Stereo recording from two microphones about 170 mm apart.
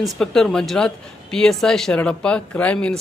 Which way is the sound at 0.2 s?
5° left (ahead or behind).